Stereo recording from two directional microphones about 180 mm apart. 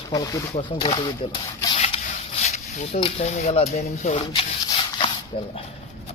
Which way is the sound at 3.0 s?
40° left (ahead or behind).